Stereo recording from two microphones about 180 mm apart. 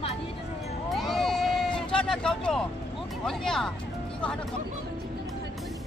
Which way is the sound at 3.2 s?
5° left (ahead or behind).